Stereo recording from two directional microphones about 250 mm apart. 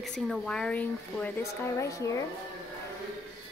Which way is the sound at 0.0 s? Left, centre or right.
Centre.